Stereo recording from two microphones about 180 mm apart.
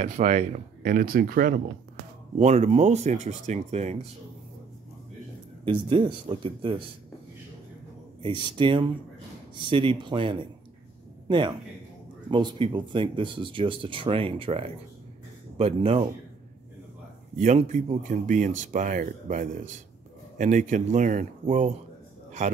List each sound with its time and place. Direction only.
0.0 s speech: 40° right (ahead or behind)
2.3 s speech: 40° right (ahead or behind)
5.7 s speech: 30° right (ahead or behind)
8.2 s speech: 30° right (ahead or behind)
17.4 s speech: 40° right (ahead or behind)